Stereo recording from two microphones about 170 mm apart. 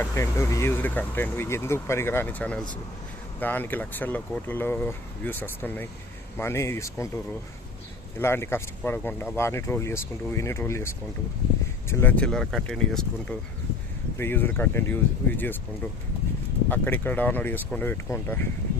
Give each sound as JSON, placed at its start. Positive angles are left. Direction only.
{"t": 0.0, "sound": "speech", "side_deg": 15}
{"t": 8.2, "sound": "speech", "side_deg": 15}
{"t": 16.6, "sound": "speech", "side_deg": 10}